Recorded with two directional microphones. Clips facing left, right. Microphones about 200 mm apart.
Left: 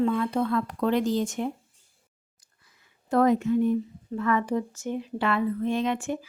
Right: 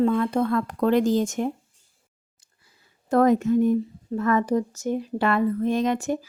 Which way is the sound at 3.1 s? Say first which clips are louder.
Right 3 dB; 45° right (ahead or behind).